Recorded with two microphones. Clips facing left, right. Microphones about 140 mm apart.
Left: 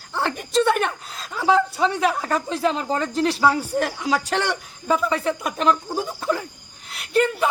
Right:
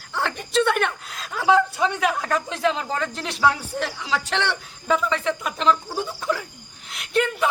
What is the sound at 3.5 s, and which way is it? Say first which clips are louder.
Speech: left 4 dB; 40° left (ahead or behind).